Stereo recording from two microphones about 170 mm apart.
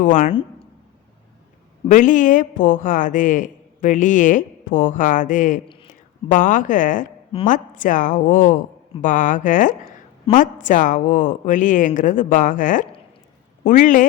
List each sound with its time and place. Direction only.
0.0 s a woman's voice: 50° left (ahead or behind)
1.9 s a woman's voice: 50° left (ahead or behind)